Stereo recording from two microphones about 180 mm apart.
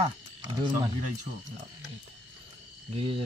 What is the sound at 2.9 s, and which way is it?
Speech, 30° right (ahead or behind).